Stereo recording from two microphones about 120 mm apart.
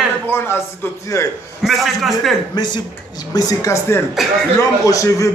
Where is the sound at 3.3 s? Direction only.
30° left (ahead or behind).